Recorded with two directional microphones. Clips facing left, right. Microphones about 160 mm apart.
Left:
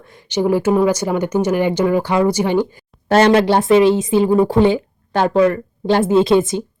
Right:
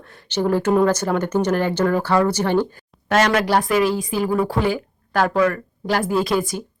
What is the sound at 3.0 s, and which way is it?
A woman's voice, 30° left (ahead or behind).